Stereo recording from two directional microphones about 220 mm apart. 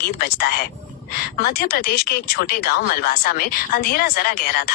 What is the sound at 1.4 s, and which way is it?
Speech, 45° left (ahead or behind).